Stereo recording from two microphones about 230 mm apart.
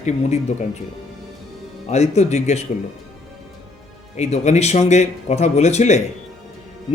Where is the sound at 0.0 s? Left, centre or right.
Left.